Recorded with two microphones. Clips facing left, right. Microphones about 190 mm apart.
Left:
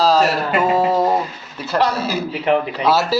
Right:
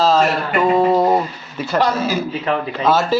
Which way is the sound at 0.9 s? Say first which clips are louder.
Right 2 dB; centre (ahead or behind).